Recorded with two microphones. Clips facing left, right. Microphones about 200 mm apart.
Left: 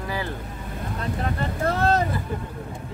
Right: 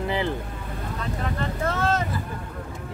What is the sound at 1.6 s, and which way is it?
Speech, 35° left (ahead or behind).